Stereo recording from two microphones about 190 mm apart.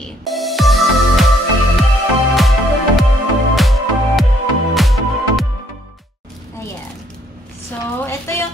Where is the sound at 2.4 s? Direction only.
Centre (ahead or behind).